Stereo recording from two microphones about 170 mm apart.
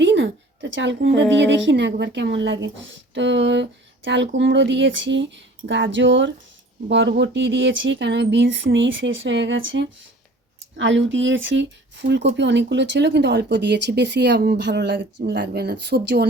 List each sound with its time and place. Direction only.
0.0 s a woman's voice: 90° right
6.8 s speech: 80° right